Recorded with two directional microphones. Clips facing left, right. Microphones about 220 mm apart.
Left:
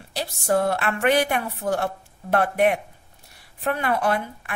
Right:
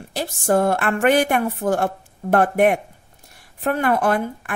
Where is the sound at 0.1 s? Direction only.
50° right (ahead or behind).